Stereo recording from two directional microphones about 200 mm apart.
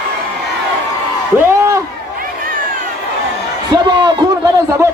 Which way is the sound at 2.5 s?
45° right (ahead or behind).